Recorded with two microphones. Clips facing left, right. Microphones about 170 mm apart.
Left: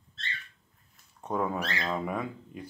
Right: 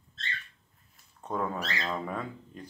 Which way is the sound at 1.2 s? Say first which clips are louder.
Left 2 dB; 10° left (ahead or behind).